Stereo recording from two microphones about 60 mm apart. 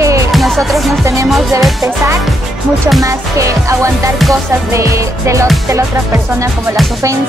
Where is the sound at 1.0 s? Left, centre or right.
Right.